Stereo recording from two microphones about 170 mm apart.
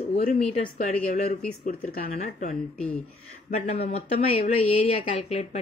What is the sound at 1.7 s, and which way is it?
Speech, 60° left (ahead or behind).